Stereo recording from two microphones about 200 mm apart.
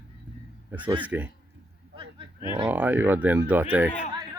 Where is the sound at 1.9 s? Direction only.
25° right (ahead or behind).